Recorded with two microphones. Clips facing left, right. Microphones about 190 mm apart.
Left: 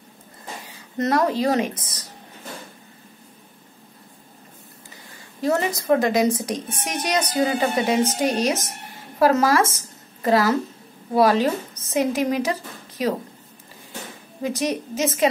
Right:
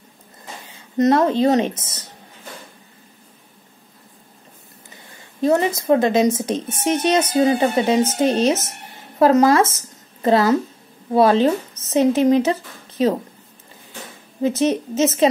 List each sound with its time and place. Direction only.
0.7 s speech: 20° right (ahead or behind)
5.4 s a woman's voice: 20° right (ahead or behind)
14.4 s speech: 25° right (ahead or behind)